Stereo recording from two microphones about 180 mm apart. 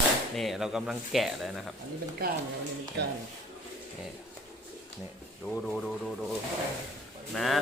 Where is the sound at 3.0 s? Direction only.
70° right (ahead or behind).